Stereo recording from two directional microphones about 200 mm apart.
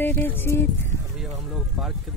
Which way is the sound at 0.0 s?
10° left (ahead or behind).